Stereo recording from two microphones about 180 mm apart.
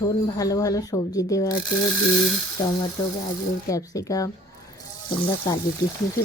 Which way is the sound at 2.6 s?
20° left (ahead or behind).